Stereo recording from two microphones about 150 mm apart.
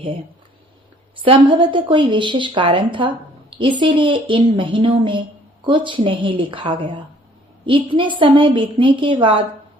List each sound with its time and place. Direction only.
1.2 s a woman's voice: 35° right (ahead or behind)